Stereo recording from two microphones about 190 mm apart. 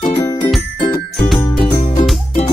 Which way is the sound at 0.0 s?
25° left (ahead or behind).